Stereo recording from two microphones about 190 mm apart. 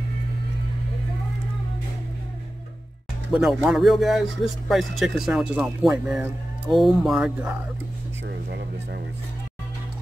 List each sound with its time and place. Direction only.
3.3 s speech: 5° right (ahead or behind)
8.3 s speech: 60° right (ahead or behind)